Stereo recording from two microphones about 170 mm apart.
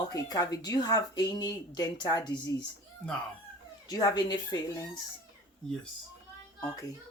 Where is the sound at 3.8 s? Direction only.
20° left (ahead or behind).